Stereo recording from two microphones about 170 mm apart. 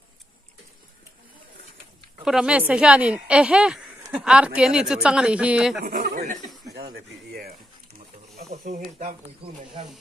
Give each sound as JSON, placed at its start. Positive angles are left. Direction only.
{"t": 2.2, "sound": "speech", "side_deg": -5}
{"t": 5.9, "sound": "speech", "side_deg": -55}
{"t": 6.7, "sound": "speech", "side_deg": -65}
{"t": 8.4, "sound": "speech", "side_deg": -40}